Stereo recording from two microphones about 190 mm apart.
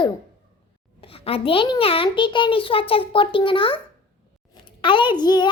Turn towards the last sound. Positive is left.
turn(degrees=20)  # may be behind; listen again after turning